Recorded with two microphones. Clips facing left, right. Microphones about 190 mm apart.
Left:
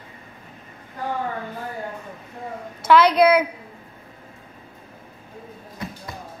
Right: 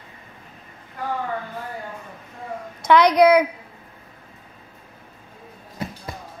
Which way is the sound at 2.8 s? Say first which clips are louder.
Right 1 dB; 15° right (ahead or behind).